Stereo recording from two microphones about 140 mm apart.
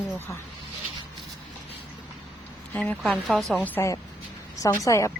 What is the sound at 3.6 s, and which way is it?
Speech, 20° left (ahead or behind).